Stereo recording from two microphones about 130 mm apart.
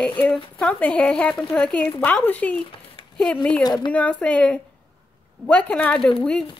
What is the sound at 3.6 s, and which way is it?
Speech, 35° left (ahead or behind).